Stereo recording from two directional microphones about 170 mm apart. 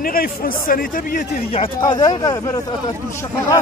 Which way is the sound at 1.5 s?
30° left (ahead or behind).